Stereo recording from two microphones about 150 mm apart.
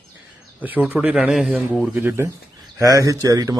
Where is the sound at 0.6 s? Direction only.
10° right (ahead or behind).